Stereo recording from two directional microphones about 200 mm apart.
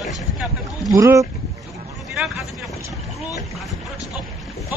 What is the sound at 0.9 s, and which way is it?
Speech, 15° right (ahead or behind).